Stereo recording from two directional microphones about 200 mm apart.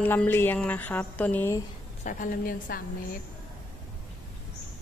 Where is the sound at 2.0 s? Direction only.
40° left (ahead or behind).